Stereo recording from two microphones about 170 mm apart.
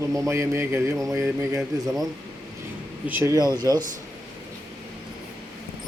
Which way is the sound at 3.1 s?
15° right (ahead or behind).